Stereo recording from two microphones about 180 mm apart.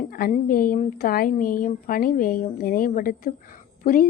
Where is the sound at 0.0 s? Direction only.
50° left (ahead or behind).